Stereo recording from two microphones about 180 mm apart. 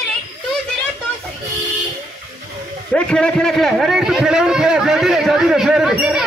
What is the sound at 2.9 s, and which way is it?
A man's voice, 5° left (ahead or behind).